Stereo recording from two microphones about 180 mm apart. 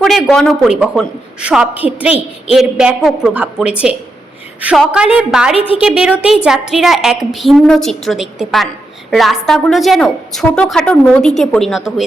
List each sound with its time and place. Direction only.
0.0 s a woman's voice: centre (ahead or behind)
5.5 s a woman's voice: 30° left (ahead or behind)
5.8 s a woman's voice: 5° right (ahead or behind)